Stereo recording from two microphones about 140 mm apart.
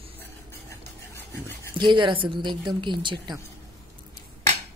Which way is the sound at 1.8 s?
35° right (ahead or behind).